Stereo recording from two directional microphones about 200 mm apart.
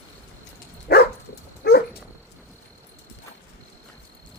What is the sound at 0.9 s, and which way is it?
Dog, 50° left (ahead or behind).